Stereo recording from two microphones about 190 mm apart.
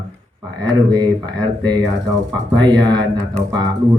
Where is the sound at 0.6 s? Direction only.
20° right (ahead or behind).